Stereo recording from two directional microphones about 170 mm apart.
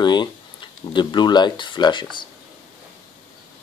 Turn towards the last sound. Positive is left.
turn(degrees=30)  # may be behind; listen again after turning